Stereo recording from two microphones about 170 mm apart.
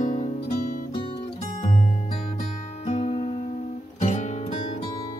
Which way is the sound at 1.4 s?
45° left (ahead or behind).